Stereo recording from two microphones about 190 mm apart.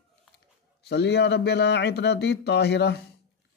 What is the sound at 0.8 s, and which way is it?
Speech, 60° left (ahead or behind).